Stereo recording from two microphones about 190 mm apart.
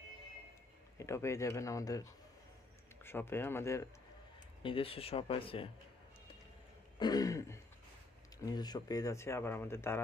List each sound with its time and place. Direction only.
0.9 s speech: 15° left (ahead or behind)
4.6 s speech: 30° left (ahead or behind)
7.0 s throat clearing: 20° left (ahead or behind)
8.4 s speech: 20° left (ahead or behind)